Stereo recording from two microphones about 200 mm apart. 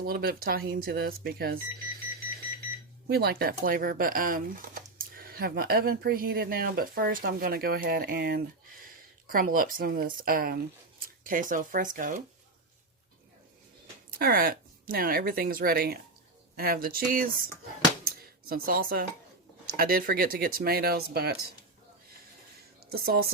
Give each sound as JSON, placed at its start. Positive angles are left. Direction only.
{"t": 0.0, "sound": "speech", "side_deg": -50}
{"t": 3.1, "sound": "speech", "side_deg": -50}
{"t": 14.1, "sound": "speech", "side_deg": -45}
{"t": 18.0, "sound": "a sound", "side_deg": -45}
{"t": 19.7, "sound": "speech", "side_deg": -45}
{"t": 22.9, "sound": "speech", "side_deg": -50}